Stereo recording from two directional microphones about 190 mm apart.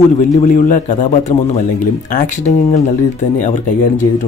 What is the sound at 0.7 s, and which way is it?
A man's voice, 40° left (ahead or behind).